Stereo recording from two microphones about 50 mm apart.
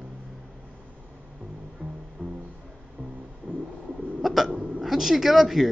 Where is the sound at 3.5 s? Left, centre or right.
Left.